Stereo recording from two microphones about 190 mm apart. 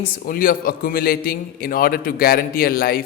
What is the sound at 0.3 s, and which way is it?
A man's voice, 50° left (ahead or behind).